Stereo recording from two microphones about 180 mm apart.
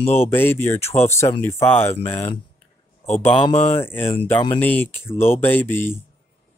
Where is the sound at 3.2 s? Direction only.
30° left (ahead or behind).